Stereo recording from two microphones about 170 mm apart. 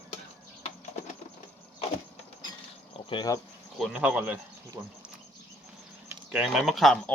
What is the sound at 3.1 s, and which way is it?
Speech, 25° left (ahead or behind).